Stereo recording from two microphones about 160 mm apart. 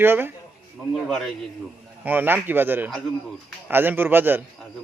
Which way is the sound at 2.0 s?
10° right (ahead or behind).